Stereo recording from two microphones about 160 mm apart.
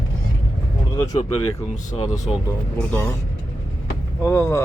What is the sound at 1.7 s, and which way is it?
Speech, 50° left (ahead or behind).